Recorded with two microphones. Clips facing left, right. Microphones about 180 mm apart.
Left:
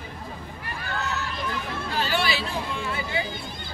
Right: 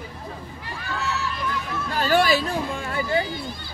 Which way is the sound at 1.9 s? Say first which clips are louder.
Right 7 dB; 45° right (ahead or behind).